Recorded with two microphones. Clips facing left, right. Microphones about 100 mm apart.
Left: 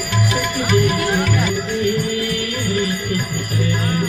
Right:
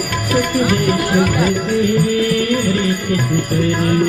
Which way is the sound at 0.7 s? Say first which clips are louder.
Right 1 dB; 50° right (ahead or behind).